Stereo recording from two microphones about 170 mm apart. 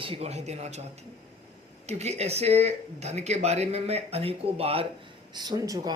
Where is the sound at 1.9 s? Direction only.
40° right (ahead or behind).